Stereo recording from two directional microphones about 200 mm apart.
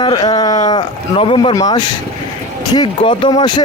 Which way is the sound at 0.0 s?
20° left (ahead or behind).